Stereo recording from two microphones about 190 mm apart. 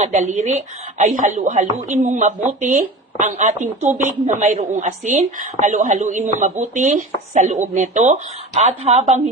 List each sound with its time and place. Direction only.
0.0 s speech: 35° right (ahead or behind)